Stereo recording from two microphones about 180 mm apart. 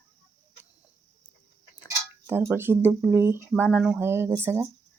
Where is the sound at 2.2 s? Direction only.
15° right (ahead or behind).